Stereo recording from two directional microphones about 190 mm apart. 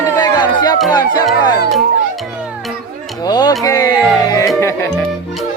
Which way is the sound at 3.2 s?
20° left (ahead or behind).